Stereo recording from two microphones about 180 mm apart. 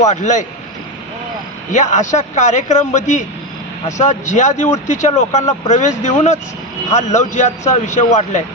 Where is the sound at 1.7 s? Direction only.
40° left (ahead or behind).